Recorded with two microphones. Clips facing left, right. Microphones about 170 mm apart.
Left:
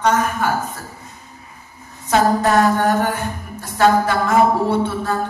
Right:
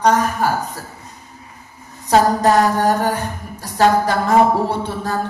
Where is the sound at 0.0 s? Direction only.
35° right (ahead or behind).